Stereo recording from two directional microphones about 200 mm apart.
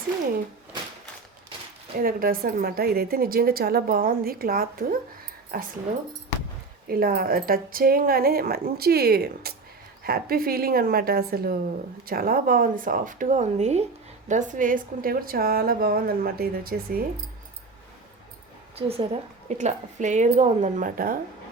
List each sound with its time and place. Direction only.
2.0 s a woman's voice: 45° right (ahead or behind)
6.8 s a woman's voice: 45° right (ahead or behind)
18.8 s a woman's voice: 30° right (ahead or behind); by 21.2 s 45° right (ahead or behind)